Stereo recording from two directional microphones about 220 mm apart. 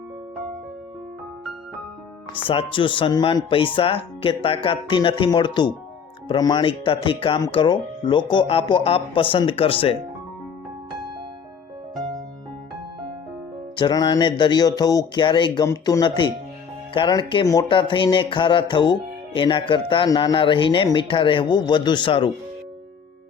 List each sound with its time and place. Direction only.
2.3 s speech: 25° left (ahead or behind)
13.7 s speech: 20° left (ahead or behind)